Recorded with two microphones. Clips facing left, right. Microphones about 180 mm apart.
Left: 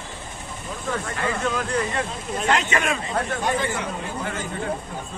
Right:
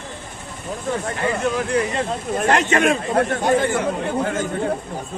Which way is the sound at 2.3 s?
50° right (ahead or behind).